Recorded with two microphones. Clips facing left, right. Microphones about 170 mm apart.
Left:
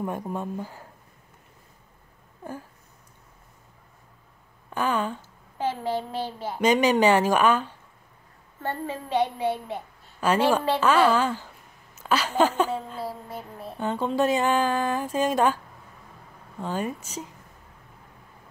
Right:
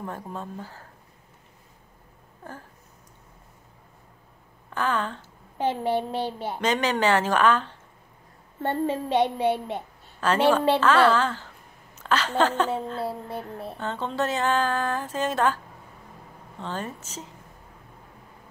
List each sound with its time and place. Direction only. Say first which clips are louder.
0.0 s speech: left 5 dB; 15° left (ahead or behind)
4.6 s speech: left 1 dB; 15° left (ahead or behind)
5.6 s a child's voice: right 3 dB; 25° right (ahead or behind)
6.6 s speech: left 5 dB; 15° left (ahead or behind)
8.5 s a child's voice: right 5 dB; 20° right (ahead or behind)
10.2 s speech: right 1 dB; 10° left (ahead or behind)
13.7 s speech: left 4 dB; 10° left (ahead or behind)